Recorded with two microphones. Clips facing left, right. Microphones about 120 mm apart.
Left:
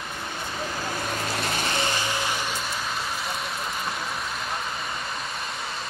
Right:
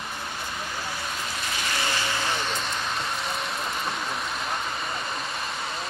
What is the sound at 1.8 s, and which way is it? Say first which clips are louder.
Music: left 1 dB; 15° left (ahead or behind).